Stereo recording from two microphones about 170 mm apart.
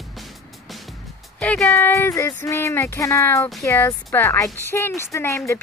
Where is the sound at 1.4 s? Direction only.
10° left (ahead or behind).